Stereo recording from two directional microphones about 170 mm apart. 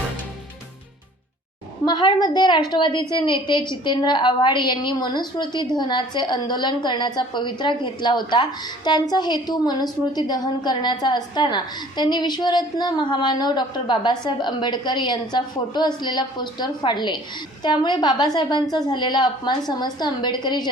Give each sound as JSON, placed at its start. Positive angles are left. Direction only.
{"t": 1.8, "sound": "a woman's voice", "side_deg": 25}